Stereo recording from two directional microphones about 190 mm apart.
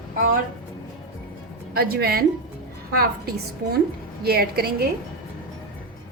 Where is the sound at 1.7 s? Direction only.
55° right (ahead or behind).